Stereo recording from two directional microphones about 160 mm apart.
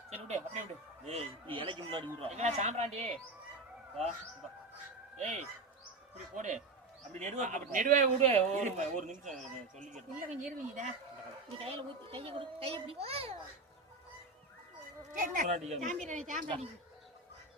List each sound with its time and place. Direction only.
0.1 s a child's voice: 45° right (ahead or behind)
2.3 s speech: 45° right (ahead or behind)
5.2 s speech: 45° right (ahead or behind)
11.6 s a child's voice: 35° right (ahead or behind)
15.1 s speech: 55° right (ahead or behind)